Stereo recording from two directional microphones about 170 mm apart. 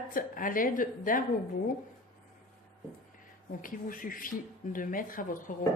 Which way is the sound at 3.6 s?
55° left (ahead or behind).